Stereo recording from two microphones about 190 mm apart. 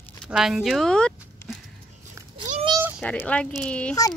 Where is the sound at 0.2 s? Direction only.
Centre (ahead or behind).